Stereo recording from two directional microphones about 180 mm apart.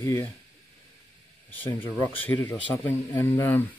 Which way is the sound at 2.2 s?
10° left (ahead or behind).